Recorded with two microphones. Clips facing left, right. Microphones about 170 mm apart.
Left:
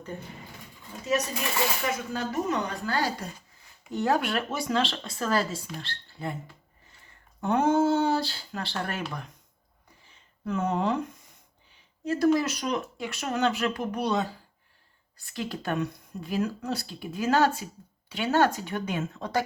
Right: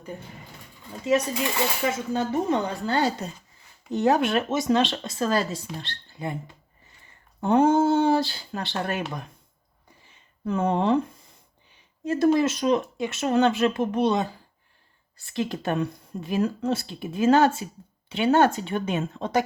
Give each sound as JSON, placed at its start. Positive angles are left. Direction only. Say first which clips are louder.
{"t": 1.9, "sound": "speech", "louder": "right 5 dB", "side_deg": -25}
{"t": 10.4, "sound": "speech", "louder": "right 4 dB", "side_deg": -30}
{"t": 12.1, "sound": "speech", "louder": "right 3 dB", "side_deg": -25}
{"t": 15.3, "sound": "speech", "louder": "right 4 dB", "side_deg": -20}